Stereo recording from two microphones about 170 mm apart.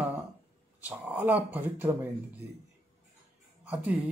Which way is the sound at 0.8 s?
5° right (ahead or behind).